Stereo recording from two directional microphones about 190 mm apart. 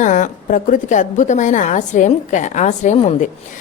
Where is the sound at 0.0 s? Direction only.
40° left (ahead or behind).